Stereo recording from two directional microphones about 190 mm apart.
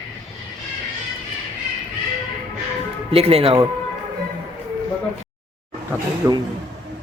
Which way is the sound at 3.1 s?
30° right (ahead or behind).